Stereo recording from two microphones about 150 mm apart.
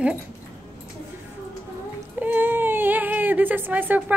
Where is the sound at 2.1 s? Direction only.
10° right (ahead or behind).